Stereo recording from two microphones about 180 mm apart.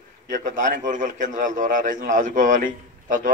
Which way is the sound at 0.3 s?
45° right (ahead or behind).